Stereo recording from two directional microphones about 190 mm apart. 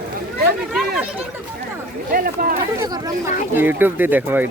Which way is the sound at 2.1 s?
50° right (ahead or behind).